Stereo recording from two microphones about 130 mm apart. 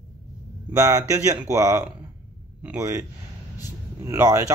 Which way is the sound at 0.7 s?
25° right (ahead or behind).